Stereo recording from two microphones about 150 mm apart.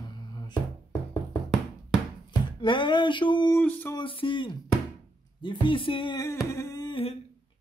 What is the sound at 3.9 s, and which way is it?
Speech, 35° left (ahead or behind).